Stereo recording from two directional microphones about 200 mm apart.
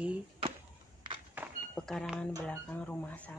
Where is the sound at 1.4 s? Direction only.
10° right (ahead or behind).